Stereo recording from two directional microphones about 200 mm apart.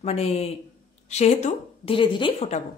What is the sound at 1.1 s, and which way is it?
A woman's voice, 35° left (ahead or behind).